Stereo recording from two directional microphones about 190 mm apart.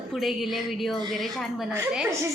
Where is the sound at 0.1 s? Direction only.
Centre (ahead or behind).